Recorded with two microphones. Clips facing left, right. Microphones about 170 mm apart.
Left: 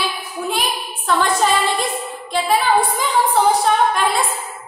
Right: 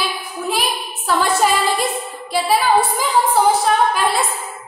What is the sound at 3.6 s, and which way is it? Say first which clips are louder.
Speech: even; 5° right (ahead or behind).